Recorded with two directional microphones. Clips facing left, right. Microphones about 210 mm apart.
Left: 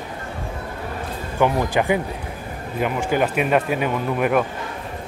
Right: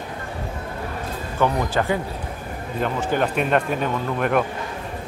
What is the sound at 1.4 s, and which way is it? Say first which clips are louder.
Speech: left 2 dB; 15° left (ahead or behind).